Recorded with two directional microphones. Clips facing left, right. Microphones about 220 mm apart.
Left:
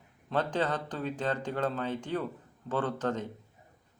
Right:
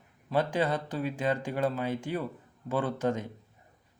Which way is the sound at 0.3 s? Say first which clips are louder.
Right 2 dB; 10° right (ahead or behind).